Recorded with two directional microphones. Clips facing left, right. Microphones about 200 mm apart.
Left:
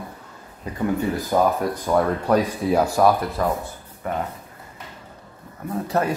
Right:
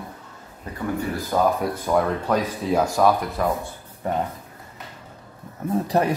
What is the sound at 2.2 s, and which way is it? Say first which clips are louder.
Speech: left 3 dB; 10° left (ahead or behind).